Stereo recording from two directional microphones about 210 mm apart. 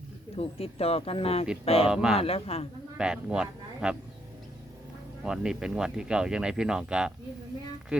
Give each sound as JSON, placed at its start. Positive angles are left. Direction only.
{"t": 0.3, "sound": "speech", "side_deg": 30}
{"t": 1.9, "sound": "speech", "side_deg": -5}
{"t": 2.1, "sound": "speech", "side_deg": 30}
{"t": 3.0, "sound": "speech", "side_deg": -5}
{"t": 5.2, "sound": "speech", "side_deg": -5}